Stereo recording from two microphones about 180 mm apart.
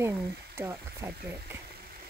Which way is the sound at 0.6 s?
15° right (ahead or behind).